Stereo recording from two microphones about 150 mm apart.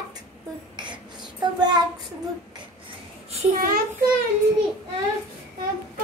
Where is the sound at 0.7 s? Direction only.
30° right (ahead or behind).